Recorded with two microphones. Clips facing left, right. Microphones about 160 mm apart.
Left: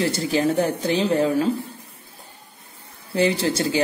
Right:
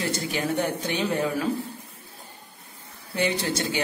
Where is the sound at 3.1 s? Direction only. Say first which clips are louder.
Left 5 dB; 30° left (ahead or behind).